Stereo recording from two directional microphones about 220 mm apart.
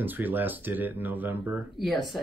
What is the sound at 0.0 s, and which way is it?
Speech, 10° right (ahead or behind).